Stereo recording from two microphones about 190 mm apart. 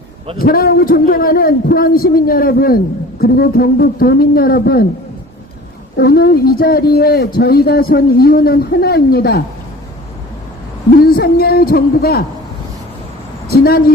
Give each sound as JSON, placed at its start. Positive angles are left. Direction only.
{"t": 0.3, "sound": "a man's voice", "side_deg": 50}
{"t": 6.0, "sound": "a man's voice", "side_deg": 55}
{"t": 11.0, "sound": "a man's voice", "side_deg": 55}
{"t": 13.5, "sound": "a woman's voice", "side_deg": 55}